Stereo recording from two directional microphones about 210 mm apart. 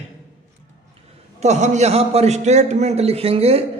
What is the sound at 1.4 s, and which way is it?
A man's voice, 35° right (ahead or behind).